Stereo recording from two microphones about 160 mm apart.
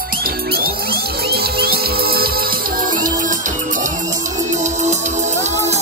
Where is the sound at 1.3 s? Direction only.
75° right (ahead or behind).